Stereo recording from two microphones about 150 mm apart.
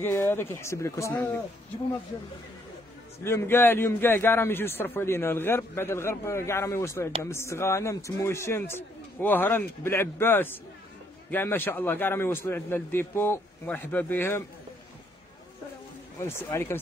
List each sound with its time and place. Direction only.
0.0 s a man's voice: 15° left (ahead or behind)
3.3 s a man's voice: 15° left (ahead or behind)
16.2 s a man's voice: 15° left (ahead or behind)